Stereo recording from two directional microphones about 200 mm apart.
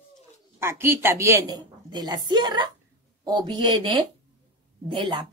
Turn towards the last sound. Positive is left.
turn(degrees=-25)  # may be behind; listen again after turning